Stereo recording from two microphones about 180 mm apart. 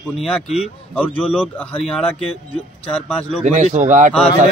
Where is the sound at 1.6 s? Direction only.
5° left (ahead or behind).